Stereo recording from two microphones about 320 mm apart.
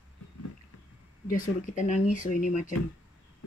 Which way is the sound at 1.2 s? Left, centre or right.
Left.